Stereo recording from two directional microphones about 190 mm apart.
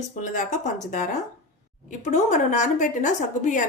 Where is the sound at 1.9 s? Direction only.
40° left (ahead or behind).